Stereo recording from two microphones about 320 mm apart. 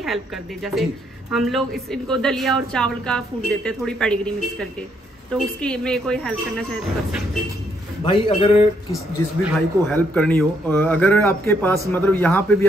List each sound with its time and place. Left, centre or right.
0.0 s a woman's voice: centre
8.0 s a man's voice: centre
9.5 s a woman's voice: centre